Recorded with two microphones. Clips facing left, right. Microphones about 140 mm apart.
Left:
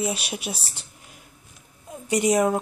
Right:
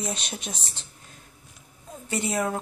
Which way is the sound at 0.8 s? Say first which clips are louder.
Left 1 dB; 10° left (ahead or behind).